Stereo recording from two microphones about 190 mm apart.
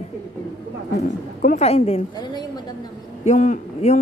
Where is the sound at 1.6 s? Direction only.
35° left (ahead or behind).